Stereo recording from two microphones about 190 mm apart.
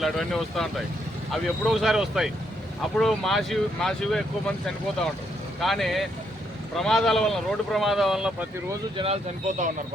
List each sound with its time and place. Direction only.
0.0 s speech: centre (ahead or behind)
5.5 s speech: centre (ahead or behind)
9.5 s speech: 40° right (ahead or behind)